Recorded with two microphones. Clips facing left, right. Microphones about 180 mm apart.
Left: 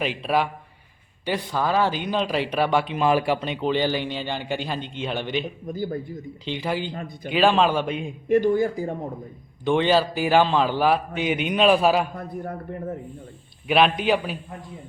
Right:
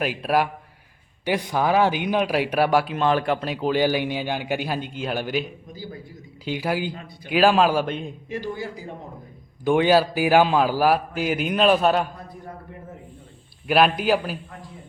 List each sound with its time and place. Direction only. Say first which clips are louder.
0.0 s a man's voice: right 1 dB; 5° right (ahead or behind)
5.6 s speech: left 9 dB; 55° left (ahead or behind)
6.4 s a man's voice: right 2 dB; 5° right (ahead or behind)
8.3 s speech: left 12 dB; 50° left (ahead or behind)
9.6 s a man's voice: right 2 dB; 10° right (ahead or behind)
13.7 s a man's voice: right 1 dB; 5° right (ahead or behind)